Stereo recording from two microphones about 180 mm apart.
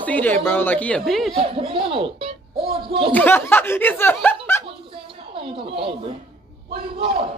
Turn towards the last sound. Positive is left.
turn(degrees=-30)  # may be behind; listen again after turning